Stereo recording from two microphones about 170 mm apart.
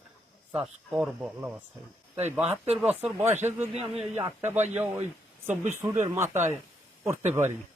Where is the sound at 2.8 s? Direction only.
10° right (ahead or behind).